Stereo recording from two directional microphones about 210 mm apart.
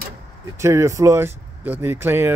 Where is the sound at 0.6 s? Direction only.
15° right (ahead or behind).